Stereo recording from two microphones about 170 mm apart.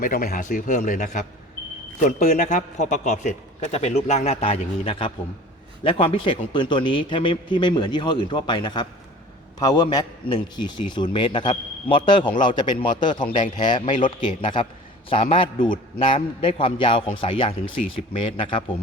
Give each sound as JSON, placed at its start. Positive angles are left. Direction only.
{"t": 0.0, "sound": "a man's voice", "side_deg": 55}
{"t": 13.1, "sound": "a man's voice", "side_deg": 50}
{"t": 14.4, "sound": "a man's voice", "side_deg": 30}